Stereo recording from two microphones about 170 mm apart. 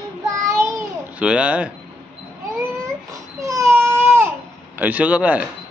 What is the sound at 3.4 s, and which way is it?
Baby cry, 20° right (ahead or behind).